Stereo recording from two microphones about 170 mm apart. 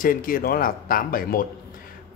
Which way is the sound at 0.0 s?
55° left (ahead or behind).